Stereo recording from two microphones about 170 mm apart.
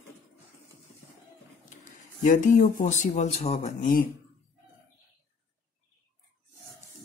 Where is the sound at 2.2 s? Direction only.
50° left (ahead or behind).